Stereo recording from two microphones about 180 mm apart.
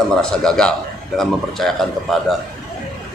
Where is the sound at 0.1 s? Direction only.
5° left (ahead or behind).